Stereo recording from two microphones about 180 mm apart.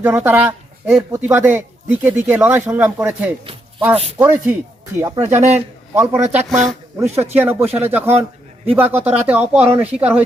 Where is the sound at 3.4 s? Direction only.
30° right (ahead or behind).